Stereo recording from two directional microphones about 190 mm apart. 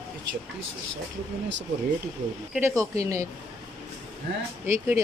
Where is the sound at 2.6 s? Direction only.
15° right (ahead or behind).